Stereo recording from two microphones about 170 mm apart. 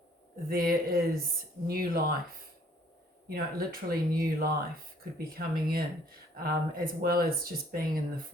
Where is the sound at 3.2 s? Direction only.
65° right (ahead or behind).